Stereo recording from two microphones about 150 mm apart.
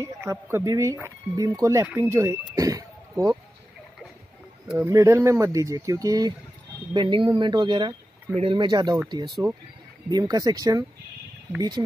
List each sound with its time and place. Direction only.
0.2 s speech: 15° right (ahead or behind)
4.7 s speech: 20° right (ahead or behind)
10.0 s speech: 25° right (ahead or behind)